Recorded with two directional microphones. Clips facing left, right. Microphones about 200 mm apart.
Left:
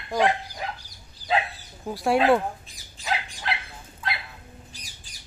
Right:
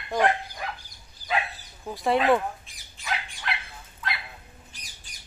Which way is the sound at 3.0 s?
35° left (ahead or behind).